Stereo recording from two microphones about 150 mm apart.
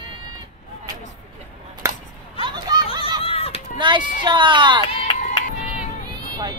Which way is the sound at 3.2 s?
40° left (ahead or behind).